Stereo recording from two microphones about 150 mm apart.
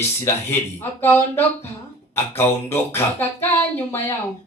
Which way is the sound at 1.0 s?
15° left (ahead or behind).